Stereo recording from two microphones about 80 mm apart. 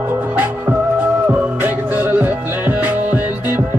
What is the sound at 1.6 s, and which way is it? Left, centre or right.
Music, right.